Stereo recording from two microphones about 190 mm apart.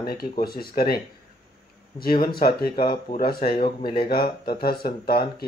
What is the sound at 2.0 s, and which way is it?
Speech, 50° left (ahead or behind).